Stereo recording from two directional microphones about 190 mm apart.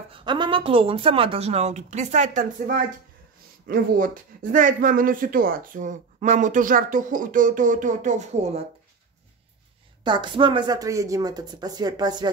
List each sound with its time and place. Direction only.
0.1 s speech: 25° right (ahead or behind)
10.0 s speech: 25° right (ahead or behind)